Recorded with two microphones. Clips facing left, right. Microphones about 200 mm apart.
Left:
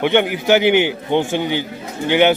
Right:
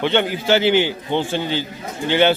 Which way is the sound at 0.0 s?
15° left (ahead or behind).